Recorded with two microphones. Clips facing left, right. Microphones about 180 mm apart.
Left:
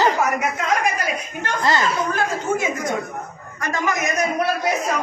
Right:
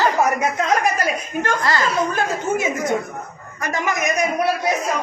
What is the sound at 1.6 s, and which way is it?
Speech, 25° left (ahead or behind).